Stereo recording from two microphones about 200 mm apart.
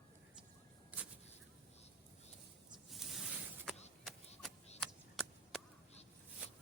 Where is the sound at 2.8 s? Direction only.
Centre (ahead or behind).